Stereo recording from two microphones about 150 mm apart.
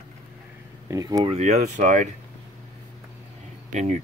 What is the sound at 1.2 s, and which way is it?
Speech, 45° right (ahead or behind).